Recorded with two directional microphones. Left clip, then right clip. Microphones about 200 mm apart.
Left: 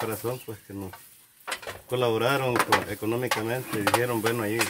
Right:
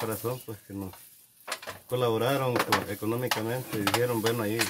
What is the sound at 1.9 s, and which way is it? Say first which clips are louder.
Speech: left 2 dB; 15° right (ahead or behind).